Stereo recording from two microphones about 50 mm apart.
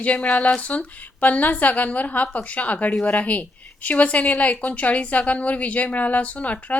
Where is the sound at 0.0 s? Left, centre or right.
Left.